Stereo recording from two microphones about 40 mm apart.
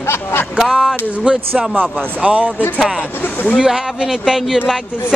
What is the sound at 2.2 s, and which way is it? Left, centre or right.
Speech, right.